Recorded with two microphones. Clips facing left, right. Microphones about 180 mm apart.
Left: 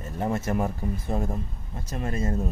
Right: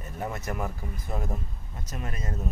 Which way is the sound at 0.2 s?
25° left (ahead or behind).